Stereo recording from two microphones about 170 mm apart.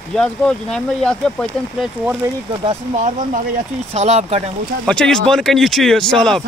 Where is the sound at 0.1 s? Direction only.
5° left (ahead or behind).